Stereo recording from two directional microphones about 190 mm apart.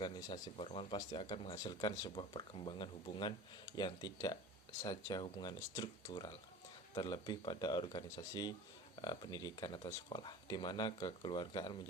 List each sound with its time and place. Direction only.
0.0 s speech: 20° left (ahead or behind)